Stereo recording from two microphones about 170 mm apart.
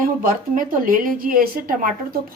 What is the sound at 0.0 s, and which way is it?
Speech, 50° right (ahead or behind).